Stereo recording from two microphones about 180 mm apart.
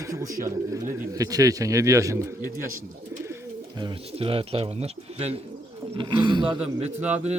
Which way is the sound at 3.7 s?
25° right (ahead or behind).